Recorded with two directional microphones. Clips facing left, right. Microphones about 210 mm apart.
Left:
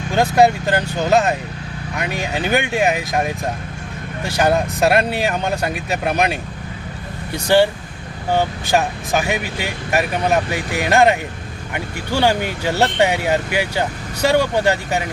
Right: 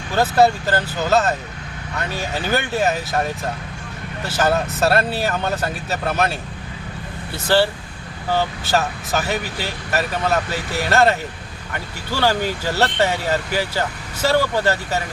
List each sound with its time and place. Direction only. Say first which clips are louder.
0.1 s speech: left 2 dB; 15° left (ahead or behind)